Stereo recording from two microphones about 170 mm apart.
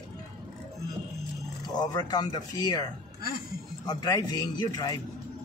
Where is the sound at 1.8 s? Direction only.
25° left (ahead or behind).